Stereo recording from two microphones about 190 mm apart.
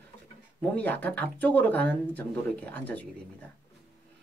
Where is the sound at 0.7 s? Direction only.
10° left (ahead or behind).